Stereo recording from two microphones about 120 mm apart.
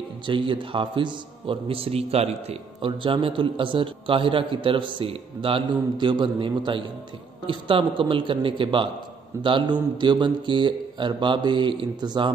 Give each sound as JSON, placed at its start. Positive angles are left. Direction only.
{"t": 0.3, "sound": "a man's voice", "side_deg": -45}